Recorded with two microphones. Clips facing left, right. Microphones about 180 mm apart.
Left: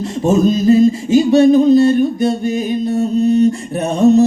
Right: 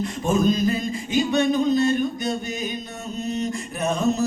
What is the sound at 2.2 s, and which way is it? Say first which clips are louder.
Mantra: left 11 dB; 30° left (ahead or behind).